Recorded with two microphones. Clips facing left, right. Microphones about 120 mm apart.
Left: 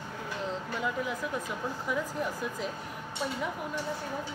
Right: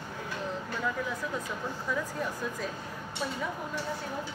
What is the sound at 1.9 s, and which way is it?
Speech, 20° left (ahead or behind).